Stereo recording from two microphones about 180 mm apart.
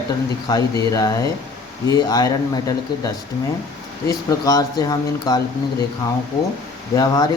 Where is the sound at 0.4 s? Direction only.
20° left (ahead or behind).